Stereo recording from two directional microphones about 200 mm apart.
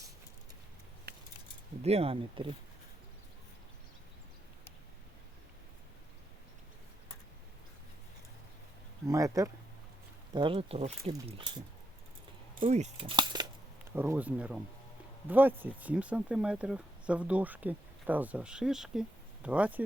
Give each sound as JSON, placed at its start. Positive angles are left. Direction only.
{"t": 1.8, "sound": "speech", "side_deg": -30}
{"t": 9.0, "sound": "speech", "side_deg": -15}
{"t": 12.5, "sound": "speech", "side_deg": -30}
{"t": 13.1, "sound": "a sound", "side_deg": -20}
{"t": 13.9, "sound": "speech", "side_deg": -10}